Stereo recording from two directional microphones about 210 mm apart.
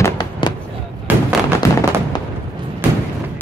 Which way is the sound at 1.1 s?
10° right (ahead or behind).